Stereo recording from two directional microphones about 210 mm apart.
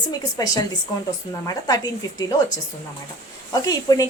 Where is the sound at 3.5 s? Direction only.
20° left (ahead or behind).